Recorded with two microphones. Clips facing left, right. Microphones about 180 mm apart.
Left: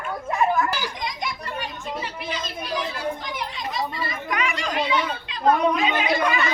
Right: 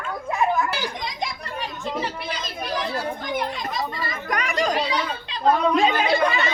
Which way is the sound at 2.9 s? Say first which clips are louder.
Right 3 dB; 50° right (ahead or behind).